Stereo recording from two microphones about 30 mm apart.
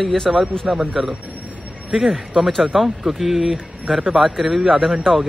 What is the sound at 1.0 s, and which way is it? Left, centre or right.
Speech, centre.